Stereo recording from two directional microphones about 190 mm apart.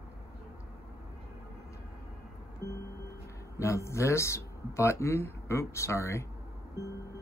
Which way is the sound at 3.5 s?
15° left (ahead or behind).